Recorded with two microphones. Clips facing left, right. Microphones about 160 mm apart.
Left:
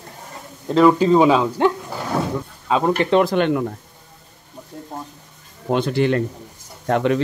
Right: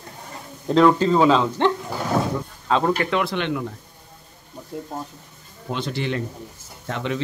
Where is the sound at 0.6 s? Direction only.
5° left (ahead or behind).